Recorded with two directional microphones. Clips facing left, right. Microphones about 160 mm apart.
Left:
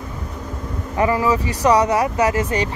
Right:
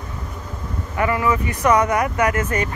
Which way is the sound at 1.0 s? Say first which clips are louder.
Left 2 dB; 25° left (ahead or behind).